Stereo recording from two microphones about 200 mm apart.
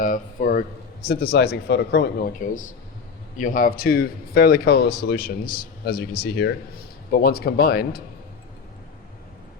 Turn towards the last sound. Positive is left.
turn(degrees=50)  # may be behind; listen again after turning